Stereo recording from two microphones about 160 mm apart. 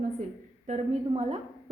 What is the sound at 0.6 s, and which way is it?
Speech, 45° right (ahead or behind).